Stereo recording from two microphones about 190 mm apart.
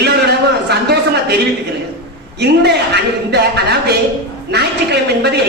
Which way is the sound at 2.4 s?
60° right (ahead or behind).